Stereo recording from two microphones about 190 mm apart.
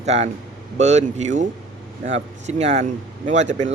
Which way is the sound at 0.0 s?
35° right (ahead or behind).